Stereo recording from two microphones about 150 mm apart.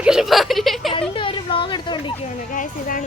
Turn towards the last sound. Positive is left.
turn(degrees=60)  # may be behind; listen again after turning